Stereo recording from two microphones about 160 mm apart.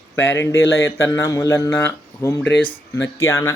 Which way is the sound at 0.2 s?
15° left (ahead or behind).